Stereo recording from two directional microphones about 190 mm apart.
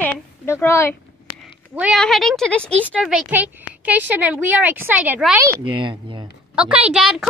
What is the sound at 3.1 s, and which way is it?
A woman's voice, 5° right (ahead or behind).